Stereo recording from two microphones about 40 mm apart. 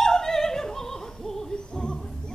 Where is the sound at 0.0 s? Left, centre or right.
Centre.